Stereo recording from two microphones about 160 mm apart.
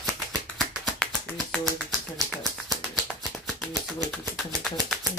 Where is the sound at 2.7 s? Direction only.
Centre (ahead or behind).